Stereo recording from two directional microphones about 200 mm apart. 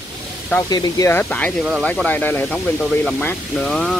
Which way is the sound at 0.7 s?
20° left (ahead or behind).